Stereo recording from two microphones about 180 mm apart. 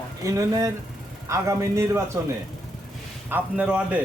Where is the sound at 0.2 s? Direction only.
20° right (ahead or behind).